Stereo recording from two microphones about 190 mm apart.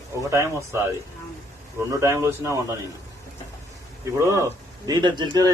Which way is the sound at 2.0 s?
15° right (ahead or behind).